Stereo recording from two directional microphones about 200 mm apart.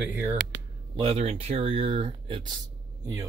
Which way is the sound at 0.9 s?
30° right (ahead or behind).